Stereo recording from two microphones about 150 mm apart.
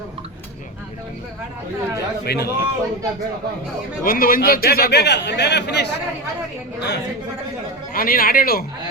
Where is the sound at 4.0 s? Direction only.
75° left (ahead or behind).